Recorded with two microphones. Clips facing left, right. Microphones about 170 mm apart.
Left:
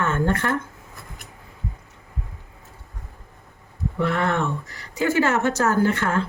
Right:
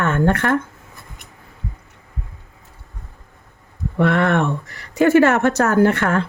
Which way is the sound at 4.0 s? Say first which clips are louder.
Right 6 dB; 70° right (ahead or behind).